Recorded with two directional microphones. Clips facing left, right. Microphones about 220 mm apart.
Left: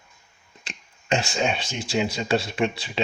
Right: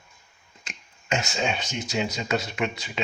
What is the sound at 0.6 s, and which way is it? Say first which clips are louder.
Speech: left 3 dB; 35° left (ahead or behind).